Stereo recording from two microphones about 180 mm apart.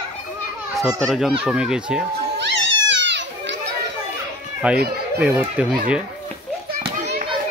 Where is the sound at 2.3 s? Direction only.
85° right.